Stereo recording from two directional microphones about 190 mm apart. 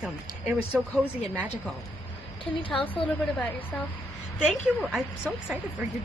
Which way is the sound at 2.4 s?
25° left (ahead or behind).